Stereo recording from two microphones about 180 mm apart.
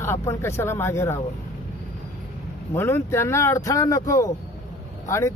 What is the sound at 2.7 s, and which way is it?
Speech, 15° left (ahead or behind).